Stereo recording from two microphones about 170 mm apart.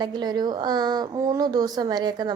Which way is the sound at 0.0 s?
25° right (ahead or behind).